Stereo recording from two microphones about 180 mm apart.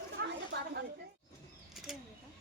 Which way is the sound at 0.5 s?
70° right (ahead or behind).